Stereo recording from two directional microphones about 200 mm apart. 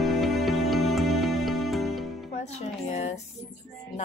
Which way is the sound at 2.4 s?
35° left (ahead or behind).